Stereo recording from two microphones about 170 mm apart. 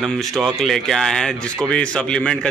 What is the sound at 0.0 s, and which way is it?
A man's voice, 5° left (ahead or behind).